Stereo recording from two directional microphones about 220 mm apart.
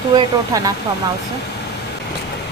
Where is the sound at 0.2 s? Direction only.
15° right (ahead or behind).